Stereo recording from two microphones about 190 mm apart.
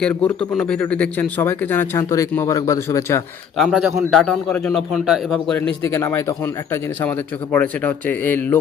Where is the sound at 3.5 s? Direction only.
Centre (ahead or behind).